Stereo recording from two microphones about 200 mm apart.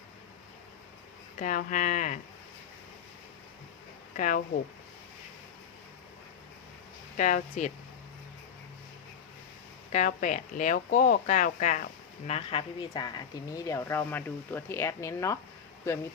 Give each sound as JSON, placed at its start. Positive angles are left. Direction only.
{"t": 1.4, "sound": "speech", "side_deg": 40}
{"t": 4.2, "sound": "speech", "side_deg": 40}
{"t": 7.2, "sound": "speech", "side_deg": 40}
{"t": 9.9, "sound": "speech", "side_deg": 40}
{"t": 12.3, "sound": "a woman's voice", "side_deg": 30}